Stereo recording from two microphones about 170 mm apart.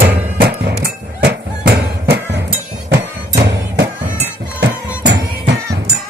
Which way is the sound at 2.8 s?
90° right.